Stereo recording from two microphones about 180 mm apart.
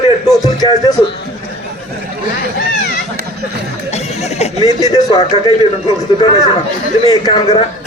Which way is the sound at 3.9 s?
35° left (ahead or behind).